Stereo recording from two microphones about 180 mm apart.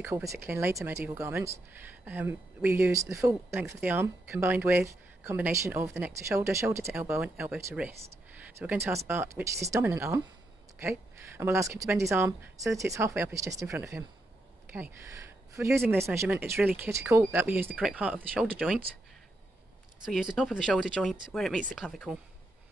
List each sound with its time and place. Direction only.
0.0 s speech: 15° right (ahead or behind)
20.1 s speech: centre (ahead or behind)